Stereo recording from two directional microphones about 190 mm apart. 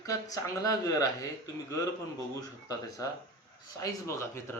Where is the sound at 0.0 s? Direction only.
20° left (ahead or behind).